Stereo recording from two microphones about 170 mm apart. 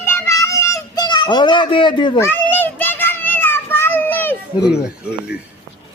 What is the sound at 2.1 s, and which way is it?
Children playing, 15° left (ahead or behind).